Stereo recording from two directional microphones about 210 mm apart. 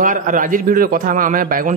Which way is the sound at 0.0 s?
40° right (ahead or behind).